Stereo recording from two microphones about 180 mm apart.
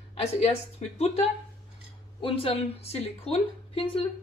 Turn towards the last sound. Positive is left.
turn(degrees=30)  # may be behind; listen again after turning